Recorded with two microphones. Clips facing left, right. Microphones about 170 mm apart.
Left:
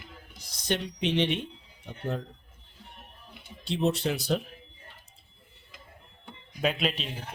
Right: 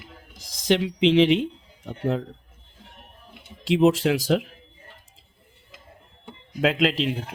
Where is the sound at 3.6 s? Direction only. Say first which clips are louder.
Right 8 dB; 90° right.